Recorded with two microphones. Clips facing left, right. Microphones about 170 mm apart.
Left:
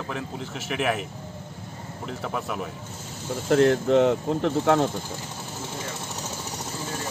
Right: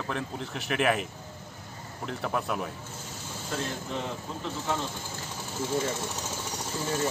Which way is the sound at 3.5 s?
80° left.